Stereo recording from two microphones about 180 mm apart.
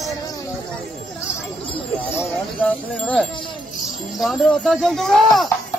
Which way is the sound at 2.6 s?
5° left (ahead or behind).